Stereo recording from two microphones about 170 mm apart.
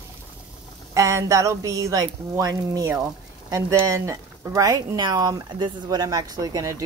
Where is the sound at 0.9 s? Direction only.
20° right (ahead or behind).